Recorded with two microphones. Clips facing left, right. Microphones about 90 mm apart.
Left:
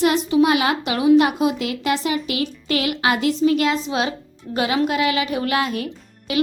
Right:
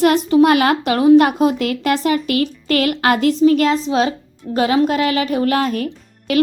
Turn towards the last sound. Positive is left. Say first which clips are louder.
# right 6 dB
turn(degrees=-45)  # may be behind; listen again after turning